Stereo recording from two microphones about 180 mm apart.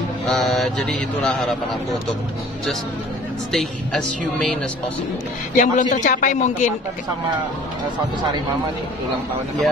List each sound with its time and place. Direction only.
0.3 s speech: centre (ahead or behind)
3.5 s speech: centre (ahead or behind)
5.6 s a man's voice: 45° left (ahead or behind)